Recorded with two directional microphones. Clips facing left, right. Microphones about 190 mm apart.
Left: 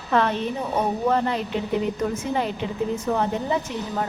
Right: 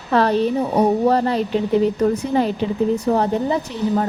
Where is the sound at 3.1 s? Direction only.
35° right (ahead or behind).